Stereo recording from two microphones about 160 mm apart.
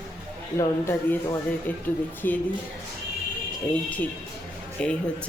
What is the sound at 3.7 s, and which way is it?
A woman's voice, 10° left (ahead or behind).